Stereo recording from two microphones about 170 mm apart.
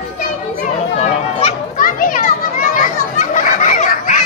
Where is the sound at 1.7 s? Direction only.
55° left (ahead or behind).